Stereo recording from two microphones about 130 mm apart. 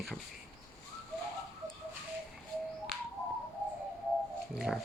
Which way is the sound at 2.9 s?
5° right (ahead or behind).